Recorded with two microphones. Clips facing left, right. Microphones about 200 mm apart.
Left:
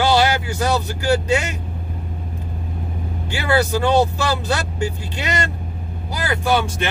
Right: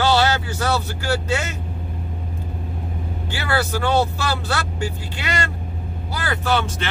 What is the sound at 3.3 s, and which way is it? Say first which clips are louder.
Speech: left 5 dB; 15° left (ahead or behind).